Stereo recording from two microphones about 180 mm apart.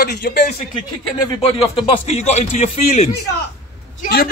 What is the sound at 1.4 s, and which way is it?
Speech, 30° left (ahead or behind).